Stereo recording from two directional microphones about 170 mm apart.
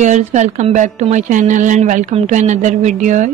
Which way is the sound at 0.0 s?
45° right (ahead or behind).